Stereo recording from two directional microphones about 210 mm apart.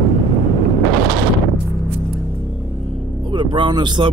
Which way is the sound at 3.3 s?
20° right (ahead or behind).